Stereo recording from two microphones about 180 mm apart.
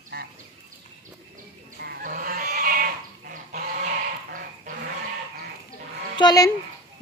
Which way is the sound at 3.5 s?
50° right (ahead or behind).